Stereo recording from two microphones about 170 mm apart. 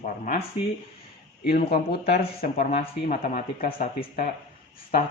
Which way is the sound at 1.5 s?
60° left (ahead or behind).